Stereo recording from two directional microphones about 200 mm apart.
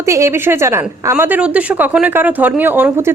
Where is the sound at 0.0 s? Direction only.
15° right (ahead or behind).